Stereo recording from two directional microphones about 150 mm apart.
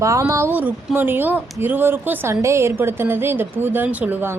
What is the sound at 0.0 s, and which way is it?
Speech, 20° right (ahead or behind).